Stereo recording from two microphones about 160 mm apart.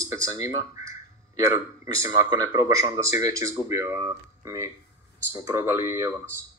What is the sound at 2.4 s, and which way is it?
Speech, 45° left (ahead or behind).